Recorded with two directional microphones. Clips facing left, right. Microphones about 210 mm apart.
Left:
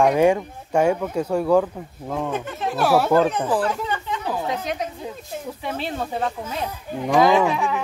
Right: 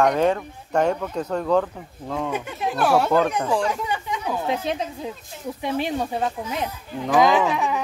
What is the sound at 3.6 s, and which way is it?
Speech, 10° right (ahead or behind).